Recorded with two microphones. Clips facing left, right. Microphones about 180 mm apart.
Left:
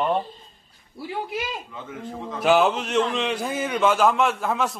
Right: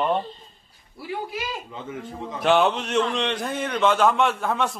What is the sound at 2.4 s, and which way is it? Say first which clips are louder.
A man's voice: left 1 dB; 5° left (ahead or behind).